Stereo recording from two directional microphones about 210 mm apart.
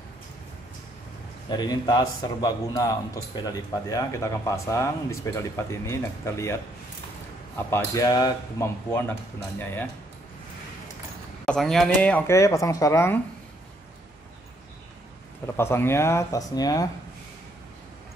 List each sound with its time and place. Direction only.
1.5 s a man's voice: 20° left (ahead or behind)
11.4 s speech: centre (ahead or behind)
15.4 s speech: 10° left (ahead or behind)